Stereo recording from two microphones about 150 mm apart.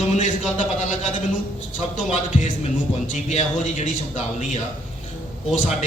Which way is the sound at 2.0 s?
50° left (ahead or behind).